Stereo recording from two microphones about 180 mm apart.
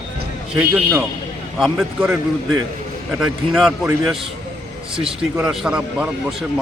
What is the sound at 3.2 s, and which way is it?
A man's voice, centre (ahead or behind).